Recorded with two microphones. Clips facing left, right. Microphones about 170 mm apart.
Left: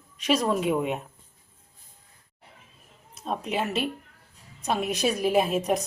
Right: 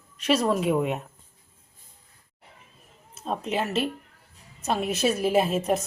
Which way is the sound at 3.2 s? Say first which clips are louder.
Right 1 dB; centre (ahead or behind).